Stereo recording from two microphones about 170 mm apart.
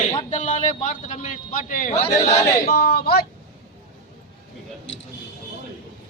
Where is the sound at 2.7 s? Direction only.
65° left (ahead or behind).